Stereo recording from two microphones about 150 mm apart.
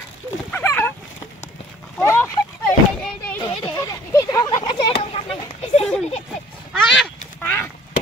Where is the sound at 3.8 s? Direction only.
25° left (ahead or behind); by 5.8 s 40° left (ahead or behind).